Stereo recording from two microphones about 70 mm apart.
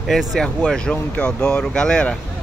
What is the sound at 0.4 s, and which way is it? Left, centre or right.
Speech, centre.